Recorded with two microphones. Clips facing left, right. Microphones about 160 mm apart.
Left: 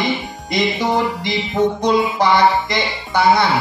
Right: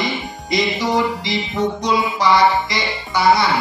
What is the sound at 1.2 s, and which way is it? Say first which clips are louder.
Music: left 3 dB; 55° left (ahead or behind).